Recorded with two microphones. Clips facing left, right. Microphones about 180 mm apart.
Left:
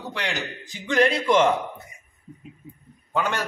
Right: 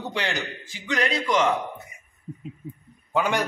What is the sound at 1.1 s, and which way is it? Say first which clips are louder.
Speech: left 3 dB; 30° left (ahead or behind).